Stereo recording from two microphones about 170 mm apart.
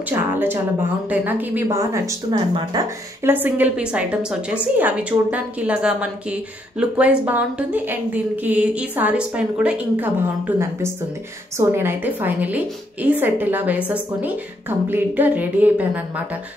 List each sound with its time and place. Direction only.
0.1 s a woman's voice: 10° right (ahead or behind)
3.3 s a woman's voice: 10° right (ahead or behind)